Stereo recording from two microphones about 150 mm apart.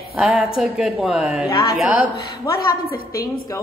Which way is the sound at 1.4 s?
25° left (ahead or behind).